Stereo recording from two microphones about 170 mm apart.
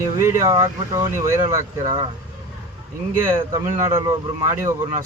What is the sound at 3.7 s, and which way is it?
Speech, 20° right (ahead or behind).